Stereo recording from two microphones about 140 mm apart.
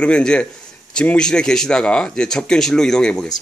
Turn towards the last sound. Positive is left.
turn(degrees=5)  # may be behind; listen again after turning